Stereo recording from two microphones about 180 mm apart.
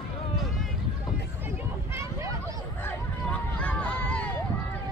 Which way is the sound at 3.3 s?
5° left (ahead or behind).